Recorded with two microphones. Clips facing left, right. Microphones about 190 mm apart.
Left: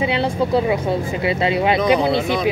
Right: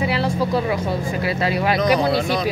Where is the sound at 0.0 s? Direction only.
25° left (ahead or behind).